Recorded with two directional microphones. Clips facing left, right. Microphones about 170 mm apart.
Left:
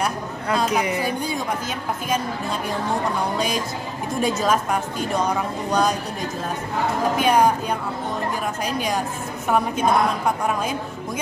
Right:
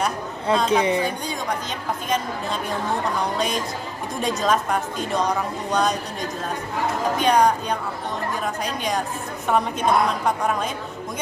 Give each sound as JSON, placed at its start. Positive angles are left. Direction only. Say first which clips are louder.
{"t": 0.7, "sound": "a woman's voice", "louder": "right 3 dB", "side_deg": -25}
{"t": 3.3, "sound": "a woman's voice", "louder": "left 1 dB", "side_deg": 0}
{"t": 7.2, "sound": "a woman's voice", "louder": "even", "side_deg": 5}
{"t": 8.6, "sound": "a woman's voice", "louder": "left 1 dB", "side_deg": 0}